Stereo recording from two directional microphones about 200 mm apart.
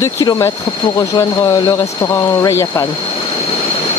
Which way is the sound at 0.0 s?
15° left (ahead or behind).